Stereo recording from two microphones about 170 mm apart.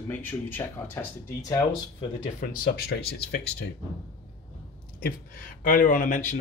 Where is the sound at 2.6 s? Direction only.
65° left (ahead or behind).